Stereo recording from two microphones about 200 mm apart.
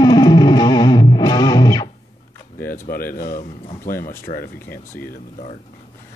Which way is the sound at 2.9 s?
45° left (ahead or behind).